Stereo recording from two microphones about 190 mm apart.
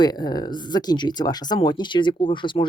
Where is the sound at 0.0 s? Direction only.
20° left (ahead or behind).